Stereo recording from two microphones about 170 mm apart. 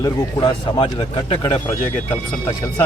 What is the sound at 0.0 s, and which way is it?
A man's voice, 25° left (ahead or behind).